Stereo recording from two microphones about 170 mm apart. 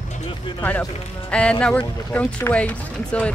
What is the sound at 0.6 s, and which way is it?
Speech, 10° left (ahead or behind).